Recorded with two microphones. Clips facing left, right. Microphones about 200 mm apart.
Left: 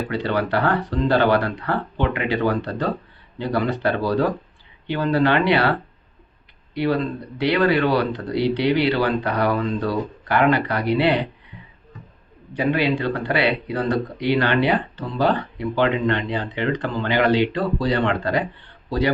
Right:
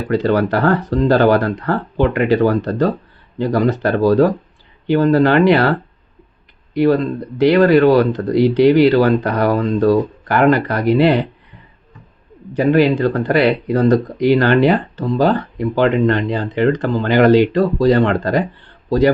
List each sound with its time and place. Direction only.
0.1 s speech: 45° right (ahead or behind)
6.7 s speech: 45° right (ahead or behind)
12.5 s speech: 45° right (ahead or behind)